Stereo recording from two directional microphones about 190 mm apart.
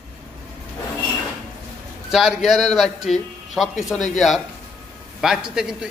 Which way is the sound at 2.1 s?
Centre (ahead or behind).